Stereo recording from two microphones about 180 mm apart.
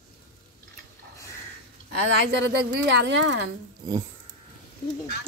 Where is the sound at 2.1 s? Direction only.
75° right (ahead or behind).